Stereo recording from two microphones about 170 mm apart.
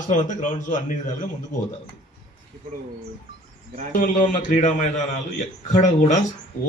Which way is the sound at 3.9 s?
50° left (ahead or behind).